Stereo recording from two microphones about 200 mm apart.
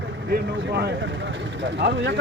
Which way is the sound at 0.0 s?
55° right (ahead or behind).